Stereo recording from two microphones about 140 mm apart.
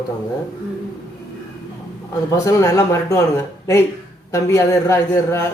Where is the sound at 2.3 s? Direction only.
25° left (ahead or behind).